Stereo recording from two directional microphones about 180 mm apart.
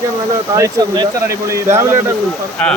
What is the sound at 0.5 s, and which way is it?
Speech, 20° right (ahead or behind).